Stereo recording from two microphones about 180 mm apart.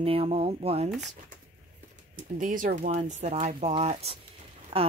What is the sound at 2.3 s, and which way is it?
Speech, 45° right (ahead or behind).